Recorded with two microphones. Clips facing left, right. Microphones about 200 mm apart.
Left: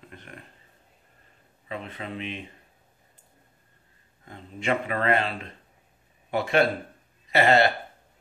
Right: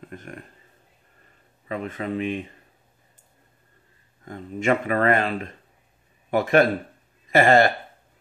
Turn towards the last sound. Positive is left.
turn(degrees=-45)  # may be behind; listen again after turning